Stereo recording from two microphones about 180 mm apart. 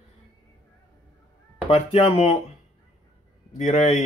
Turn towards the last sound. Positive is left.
turn(degrees=40)  # may be behind; listen again after turning